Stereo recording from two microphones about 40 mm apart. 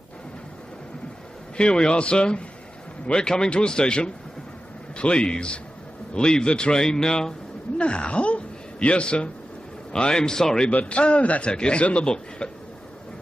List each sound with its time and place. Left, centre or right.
1.6 s speech: left
6.8 s a man's voice: centre
7.8 s a man's voice: left
10.7 s a man's voice: left
12.4 s a sound: left